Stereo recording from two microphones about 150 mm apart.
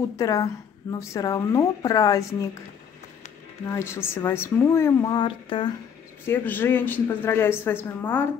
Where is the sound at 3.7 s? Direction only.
15° left (ahead or behind); by 5.7 s 35° left (ahead or behind).